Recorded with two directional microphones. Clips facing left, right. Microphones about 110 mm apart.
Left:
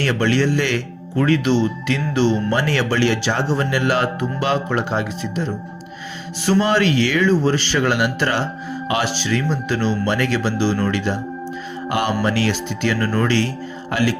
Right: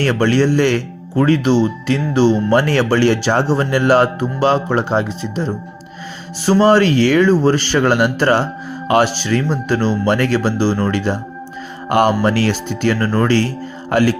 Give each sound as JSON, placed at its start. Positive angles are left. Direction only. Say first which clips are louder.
{"t": 0.0, "sound": "speech", "louder": "right 4 dB", "side_deg": -40}